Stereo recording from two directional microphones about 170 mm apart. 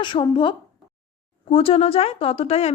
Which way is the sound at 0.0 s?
25° left (ahead or behind).